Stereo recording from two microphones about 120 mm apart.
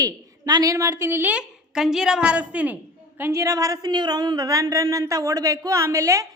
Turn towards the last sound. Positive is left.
turn(degrees=-25)  # may be behind; listen again after turning